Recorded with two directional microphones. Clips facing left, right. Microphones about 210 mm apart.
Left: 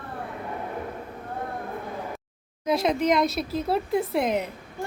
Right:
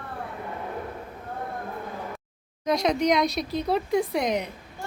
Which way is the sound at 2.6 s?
5° left (ahead or behind).